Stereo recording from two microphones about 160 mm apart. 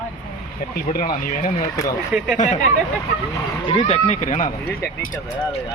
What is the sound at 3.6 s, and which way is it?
Speech, 30° left (ahead or behind).